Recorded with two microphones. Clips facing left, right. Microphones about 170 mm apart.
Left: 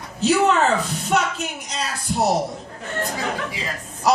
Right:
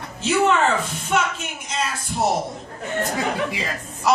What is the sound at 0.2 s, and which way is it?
A woman's voice, 35° left (ahead or behind).